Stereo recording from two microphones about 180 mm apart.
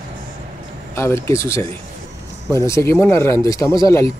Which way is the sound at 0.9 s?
15° left (ahead or behind).